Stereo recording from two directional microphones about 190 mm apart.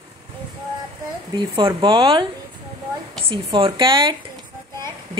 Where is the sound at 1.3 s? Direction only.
25° right (ahead or behind).